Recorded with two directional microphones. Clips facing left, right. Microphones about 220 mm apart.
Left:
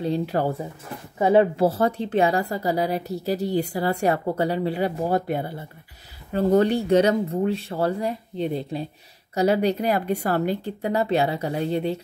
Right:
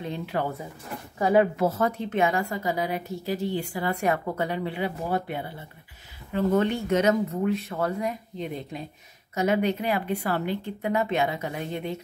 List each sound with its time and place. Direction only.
0.0 s a woman's voice: 35° left (ahead or behind)